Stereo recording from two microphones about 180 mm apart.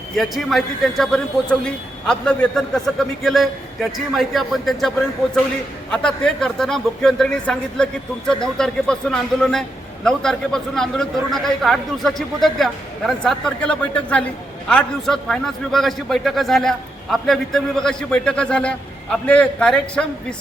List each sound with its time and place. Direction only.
0.2 s a man's voice: centre (ahead or behind)
5.9 s a man's voice: 5° left (ahead or behind)